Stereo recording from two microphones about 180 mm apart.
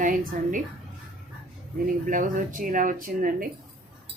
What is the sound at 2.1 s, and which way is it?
Speech, 50° right (ahead or behind).